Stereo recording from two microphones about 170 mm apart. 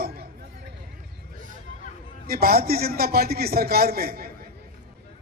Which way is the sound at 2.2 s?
65° right (ahead or behind).